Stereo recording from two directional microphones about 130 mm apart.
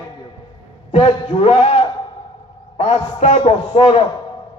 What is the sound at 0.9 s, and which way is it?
A man's voice, 50° left (ahead or behind).